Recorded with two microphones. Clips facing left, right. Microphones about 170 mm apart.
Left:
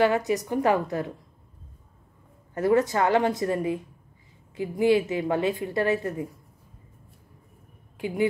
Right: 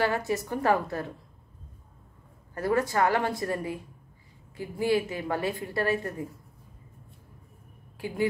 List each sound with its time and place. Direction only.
0.0 s a woman's voice: 20° left (ahead or behind)
2.5 s a woman's voice: 20° left (ahead or behind)
8.0 s speech: 20° left (ahead or behind)